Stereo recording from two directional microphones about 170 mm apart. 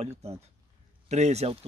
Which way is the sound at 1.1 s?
40° right (ahead or behind).